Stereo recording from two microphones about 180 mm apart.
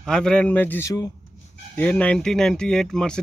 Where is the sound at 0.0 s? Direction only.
5° left (ahead or behind).